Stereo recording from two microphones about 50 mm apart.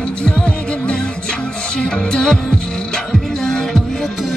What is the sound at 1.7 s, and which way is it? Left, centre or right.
Music, centre.